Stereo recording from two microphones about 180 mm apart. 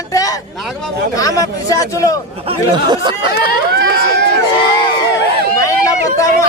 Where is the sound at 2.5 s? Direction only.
25° right (ahead or behind).